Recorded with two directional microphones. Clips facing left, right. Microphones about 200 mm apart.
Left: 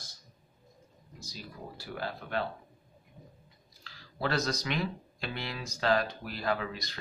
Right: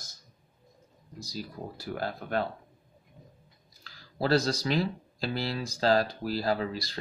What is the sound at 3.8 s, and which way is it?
Speech, 35° right (ahead or behind).